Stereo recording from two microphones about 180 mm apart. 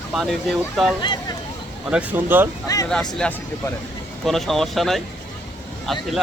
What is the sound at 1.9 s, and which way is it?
Speech, 10° right (ahead or behind).